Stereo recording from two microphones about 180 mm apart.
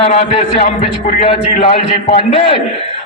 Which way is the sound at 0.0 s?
35° left (ahead or behind).